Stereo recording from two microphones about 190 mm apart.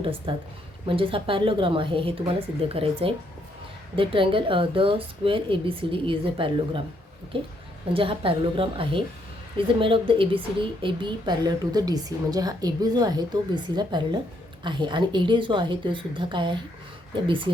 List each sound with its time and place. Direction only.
0.0 s a woman's voice: 30° right (ahead or behind)